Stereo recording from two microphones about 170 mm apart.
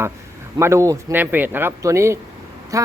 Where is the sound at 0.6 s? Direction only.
15° right (ahead or behind).